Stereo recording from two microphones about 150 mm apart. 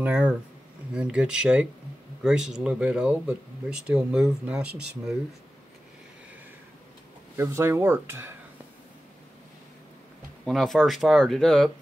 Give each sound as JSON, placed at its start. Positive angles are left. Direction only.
{"t": 0.0, "sound": "speech", "side_deg": -5}
{"t": 7.3, "sound": "speech", "side_deg": -15}
{"t": 10.4, "sound": "speech", "side_deg": 0}